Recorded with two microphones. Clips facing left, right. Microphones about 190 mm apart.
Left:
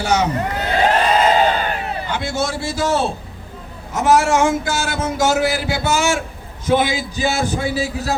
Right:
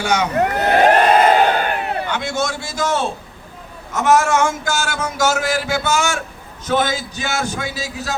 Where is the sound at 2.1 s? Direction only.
35° left (ahead or behind).